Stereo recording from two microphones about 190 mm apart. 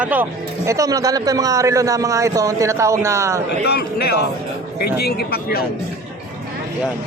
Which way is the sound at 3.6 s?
60° left (ahead or behind).